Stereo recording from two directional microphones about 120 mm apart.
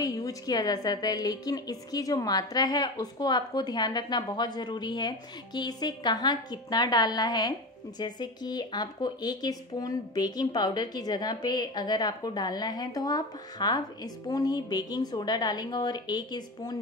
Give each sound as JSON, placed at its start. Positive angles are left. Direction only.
{"t": 0.0, "sound": "speech", "side_deg": 30}